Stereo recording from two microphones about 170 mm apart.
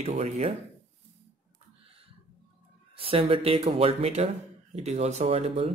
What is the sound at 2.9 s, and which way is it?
Speech, 35° right (ahead or behind).